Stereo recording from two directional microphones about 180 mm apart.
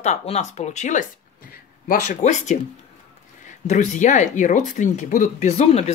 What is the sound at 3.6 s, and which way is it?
Speech, 40° left (ahead or behind).